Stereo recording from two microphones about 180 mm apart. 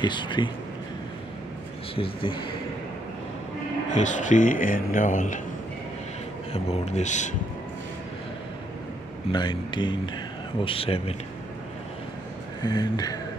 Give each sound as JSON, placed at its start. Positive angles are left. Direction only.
{"t": 0.0, "sound": "speech", "side_deg": 25}
{"t": 2.0, "sound": "speech", "side_deg": 30}
{"t": 3.9, "sound": "speech", "side_deg": 40}
{"t": 6.5, "sound": "speech", "side_deg": 35}
{"t": 9.3, "sound": "speech", "side_deg": 25}
{"t": 12.6, "sound": "speech", "side_deg": 20}